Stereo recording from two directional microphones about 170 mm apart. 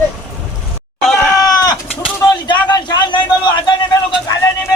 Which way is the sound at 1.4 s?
20° left (ahead or behind).